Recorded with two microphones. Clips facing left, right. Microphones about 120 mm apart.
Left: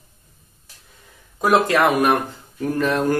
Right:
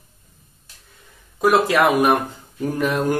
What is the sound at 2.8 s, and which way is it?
Speech, 10° right (ahead or behind).